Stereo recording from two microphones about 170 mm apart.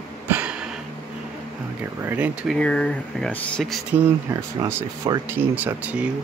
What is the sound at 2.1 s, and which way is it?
Speech, 10° right (ahead or behind).